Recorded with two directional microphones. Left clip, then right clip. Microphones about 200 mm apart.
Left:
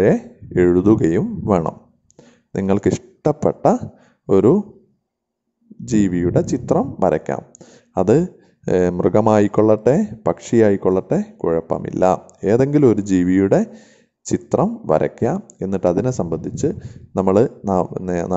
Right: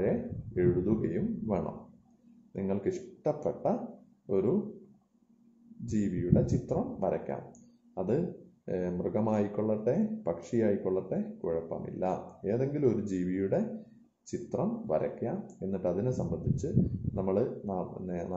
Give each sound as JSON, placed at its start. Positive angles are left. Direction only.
{"t": 0.0, "sound": "speech", "side_deg": 55}
{"t": 5.9, "sound": "speech", "side_deg": 55}